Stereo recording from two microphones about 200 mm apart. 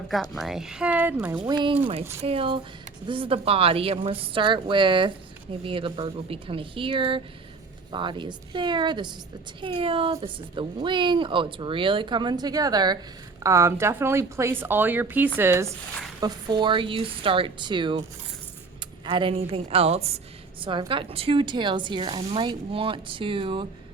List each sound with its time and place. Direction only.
0.1 s speech: centre (ahead or behind)
1.5 s a woman's voice: 25° right (ahead or behind)
19.0 s a woman's voice: 25° right (ahead or behind)